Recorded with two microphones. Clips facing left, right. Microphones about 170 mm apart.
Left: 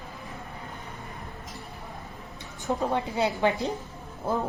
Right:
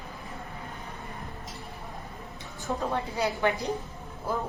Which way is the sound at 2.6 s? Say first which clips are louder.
Left 3 dB; 20° left (ahead or behind).